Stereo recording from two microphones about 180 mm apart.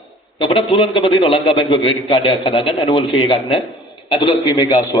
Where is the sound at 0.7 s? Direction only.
30° left (ahead or behind).